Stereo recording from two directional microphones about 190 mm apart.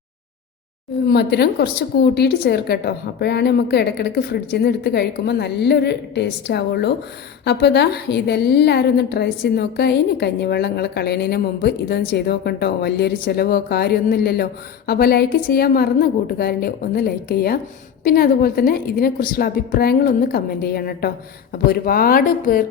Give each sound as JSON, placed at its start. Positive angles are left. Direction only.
{"t": 1.1, "sound": "a woman's voice", "side_deg": 60}